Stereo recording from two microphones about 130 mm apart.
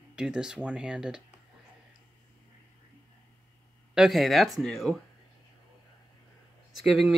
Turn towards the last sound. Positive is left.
turn(degrees=0)  # may be behind; listen again after turning